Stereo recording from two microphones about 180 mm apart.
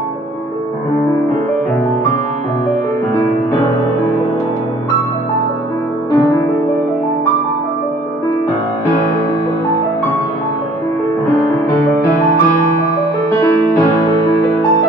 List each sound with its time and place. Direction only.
6.1 s music: 20° left (ahead or behind)